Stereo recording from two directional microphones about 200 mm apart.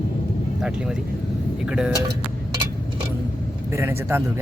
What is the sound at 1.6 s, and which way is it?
Speech, 5° right (ahead or behind).